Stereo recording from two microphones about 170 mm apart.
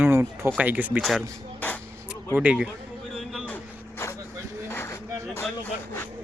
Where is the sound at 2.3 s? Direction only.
10° right (ahead or behind).